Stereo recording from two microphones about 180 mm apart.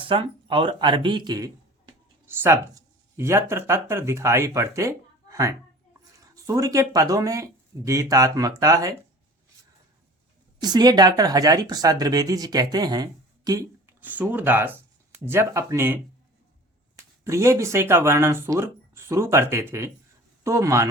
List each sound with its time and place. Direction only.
0.0 s speech: 30° right (ahead or behind)
2.2 s speech: 15° right (ahead or behind)
10.6 s speech: 20° right (ahead or behind)
17.2 s speech: 15° right (ahead or behind)